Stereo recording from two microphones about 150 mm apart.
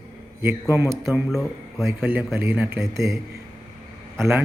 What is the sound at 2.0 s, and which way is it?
Speech, 10° right (ahead or behind).